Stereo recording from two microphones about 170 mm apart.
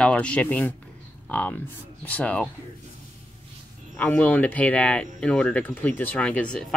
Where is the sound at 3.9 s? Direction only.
10° left (ahead or behind).